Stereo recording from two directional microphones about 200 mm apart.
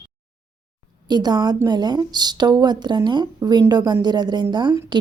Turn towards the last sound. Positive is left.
turn(degrees=-20)  # may be behind; listen again after turning